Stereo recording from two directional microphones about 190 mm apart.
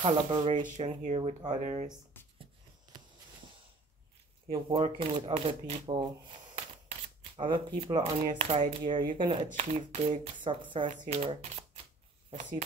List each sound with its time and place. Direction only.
0.0 s speech: 25° right (ahead or behind)
4.5 s speech: 30° right (ahead or behind)
6.5 s camera: 30° right (ahead or behind)
8.3 s speech: 30° right (ahead or behind)